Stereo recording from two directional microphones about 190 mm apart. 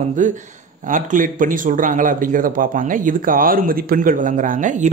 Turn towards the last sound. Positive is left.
turn(degrees=-40)  # may be behind; listen again after turning